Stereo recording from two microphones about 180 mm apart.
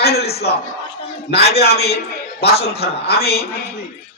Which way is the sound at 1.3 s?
65° left (ahead or behind).